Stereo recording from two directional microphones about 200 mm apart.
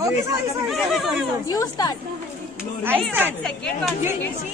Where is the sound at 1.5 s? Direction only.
20° left (ahead or behind).